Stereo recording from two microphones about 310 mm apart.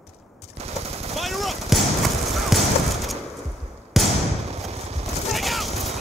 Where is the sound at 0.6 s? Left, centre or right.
Centre.